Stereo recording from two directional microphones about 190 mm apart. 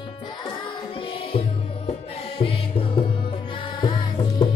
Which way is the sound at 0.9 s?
30° left (ahead or behind).